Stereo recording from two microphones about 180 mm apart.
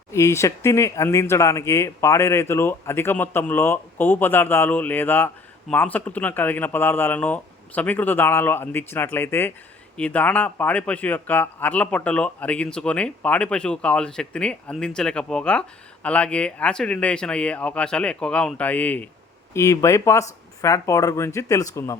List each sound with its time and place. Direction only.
0.1 s speech: 15° left (ahead or behind)